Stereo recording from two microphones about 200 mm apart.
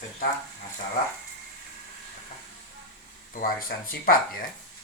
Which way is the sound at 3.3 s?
45° left (ahead or behind).